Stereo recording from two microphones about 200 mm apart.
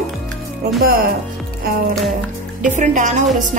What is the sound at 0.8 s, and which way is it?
Speech, 45° right (ahead or behind).